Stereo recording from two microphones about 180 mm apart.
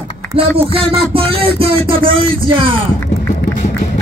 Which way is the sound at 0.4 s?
30° right (ahead or behind).